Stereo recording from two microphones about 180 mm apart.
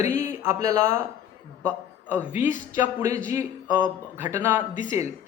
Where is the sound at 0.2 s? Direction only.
15° right (ahead or behind).